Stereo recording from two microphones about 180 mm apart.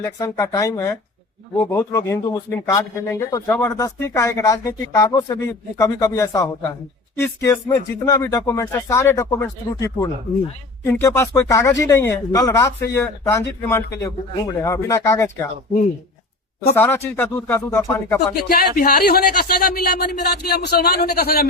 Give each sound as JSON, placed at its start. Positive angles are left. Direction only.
{"t": 0.0, "sound": "speech", "side_deg": 15}
{"t": 16.7, "sound": "speech", "side_deg": 10}
{"t": 18.3, "sound": "speech", "side_deg": 55}